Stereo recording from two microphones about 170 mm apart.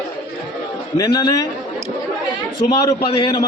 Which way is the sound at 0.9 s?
25° left (ahead or behind).